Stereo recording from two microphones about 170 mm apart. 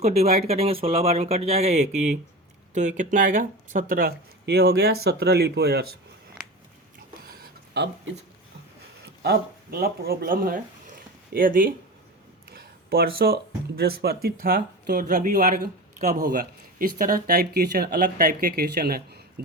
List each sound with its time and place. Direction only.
0.0 s speech: 40° right (ahead or behind); by 5.8 s 70° right (ahead or behind)
7.3 s a sound: 60° right (ahead or behind)
9.2 s speech: 70° right (ahead or behind)